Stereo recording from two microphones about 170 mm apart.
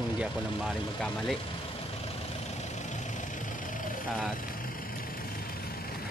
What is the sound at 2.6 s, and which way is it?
Vehicle, 45° left (ahead or behind).